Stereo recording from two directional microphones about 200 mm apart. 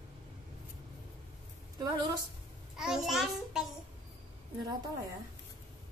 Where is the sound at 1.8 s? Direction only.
20° right (ahead or behind).